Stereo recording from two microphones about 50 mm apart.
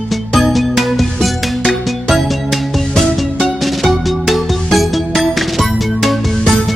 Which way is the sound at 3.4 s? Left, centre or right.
Centre.